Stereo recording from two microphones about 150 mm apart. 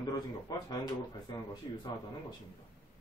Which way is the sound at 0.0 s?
25° left (ahead or behind).